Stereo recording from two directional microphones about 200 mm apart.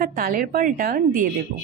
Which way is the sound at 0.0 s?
45° right (ahead or behind).